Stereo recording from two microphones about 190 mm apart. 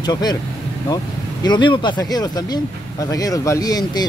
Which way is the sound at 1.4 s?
25° left (ahead or behind).